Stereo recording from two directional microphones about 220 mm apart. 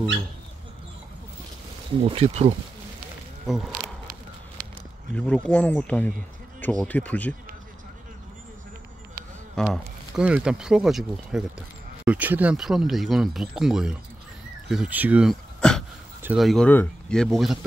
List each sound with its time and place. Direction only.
2.1 s speech: 30° right (ahead or behind)
5.1 s speech: 5° left (ahead or behind)
9.6 s speech: centre (ahead or behind)